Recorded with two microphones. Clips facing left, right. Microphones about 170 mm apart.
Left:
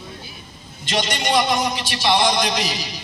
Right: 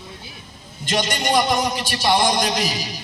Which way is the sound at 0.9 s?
45° right (ahead or behind).